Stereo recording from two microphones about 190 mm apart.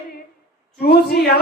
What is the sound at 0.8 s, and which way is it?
Speech, 55° left (ahead or behind).